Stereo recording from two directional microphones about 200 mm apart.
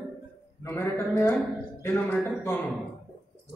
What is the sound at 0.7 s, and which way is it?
Speech, 15° left (ahead or behind).